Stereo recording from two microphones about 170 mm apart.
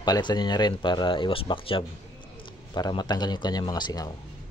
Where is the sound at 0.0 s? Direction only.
25° left (ahead or behind).